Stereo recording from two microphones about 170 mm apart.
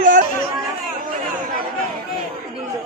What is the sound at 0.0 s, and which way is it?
Chatter, 50° right (ahead or behind).